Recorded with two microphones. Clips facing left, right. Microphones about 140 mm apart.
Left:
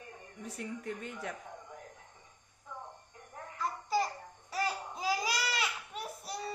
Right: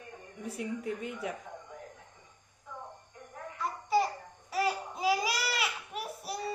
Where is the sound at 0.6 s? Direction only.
10° right (ahead or behind).